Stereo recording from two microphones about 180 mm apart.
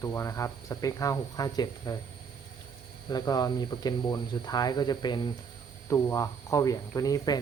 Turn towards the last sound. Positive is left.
turn(degrees=20)  # may be behind; listen again after turning